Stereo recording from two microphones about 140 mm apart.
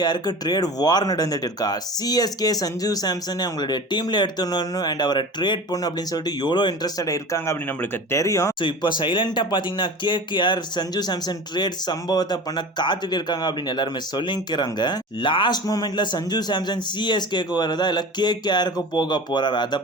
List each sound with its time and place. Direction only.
0.0 s speech: 30° left (ahead or behind)
8.6 s speech: 35° left (ahead or behind)